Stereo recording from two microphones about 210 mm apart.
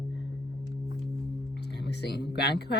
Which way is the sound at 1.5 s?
50° left (ahead or behind).